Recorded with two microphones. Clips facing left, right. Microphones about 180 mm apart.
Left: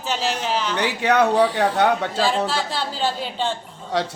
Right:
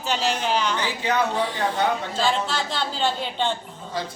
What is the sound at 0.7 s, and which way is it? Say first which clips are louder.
Speech: left 5 dB; 70° left (ahead or behind).